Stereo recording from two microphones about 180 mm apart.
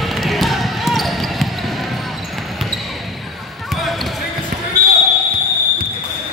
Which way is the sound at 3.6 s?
Centre (ahead or behind).